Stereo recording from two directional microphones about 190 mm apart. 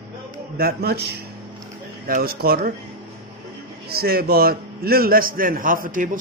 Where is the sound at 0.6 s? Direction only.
55° right (ahead or behind).